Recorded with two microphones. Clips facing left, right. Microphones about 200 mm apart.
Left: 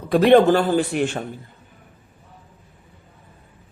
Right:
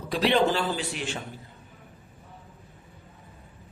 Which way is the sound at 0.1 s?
55° left (ahead or behind).